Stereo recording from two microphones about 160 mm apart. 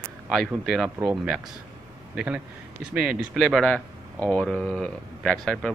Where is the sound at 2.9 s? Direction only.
5° right (ahead or behind).